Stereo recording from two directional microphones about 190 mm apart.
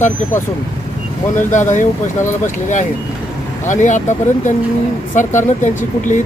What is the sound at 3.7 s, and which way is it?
Speech, 40° left (ahead or behind).